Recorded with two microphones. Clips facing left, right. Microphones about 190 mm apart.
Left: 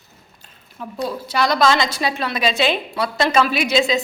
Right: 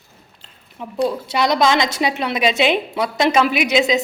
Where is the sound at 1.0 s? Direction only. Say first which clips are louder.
Right 3 dB; 20° right (ahead or behind).